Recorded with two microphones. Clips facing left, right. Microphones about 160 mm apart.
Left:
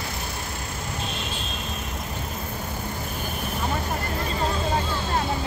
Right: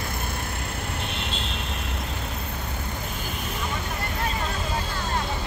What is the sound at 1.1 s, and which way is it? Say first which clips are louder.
Vehicle: even; 65° right (ahead or behind).